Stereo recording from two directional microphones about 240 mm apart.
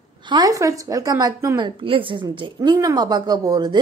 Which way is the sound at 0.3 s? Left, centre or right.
Centre.